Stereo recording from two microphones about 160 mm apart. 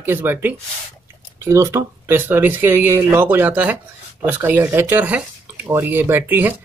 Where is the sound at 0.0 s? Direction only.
15° right (ahead or behind).